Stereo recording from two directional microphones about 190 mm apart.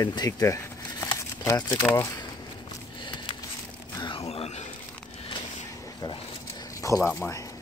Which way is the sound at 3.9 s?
25° left (ahead or behind).